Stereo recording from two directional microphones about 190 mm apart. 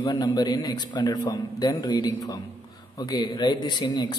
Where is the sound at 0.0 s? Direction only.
20° left (ahead or behind).